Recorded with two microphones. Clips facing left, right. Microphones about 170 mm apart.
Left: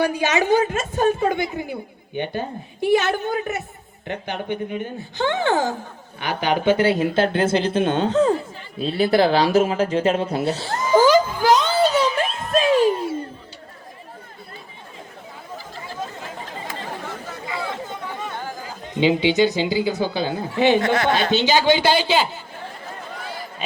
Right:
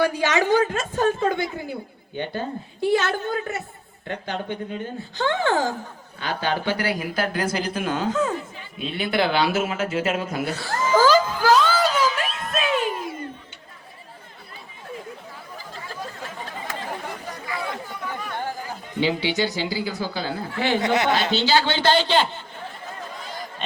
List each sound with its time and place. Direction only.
0.0 s a woman's voice: 15° left (ahead or behind); by 13.1 s 30° left (ahead or behind)
17.4 s chatter: 20° left (ahead or behind)
18.9 s speech: 20° left (ahead or behind)
20.8 s speech: 20° right (ahead or behind)
21.3 s a woman's voice: 15° left (ahead or behind)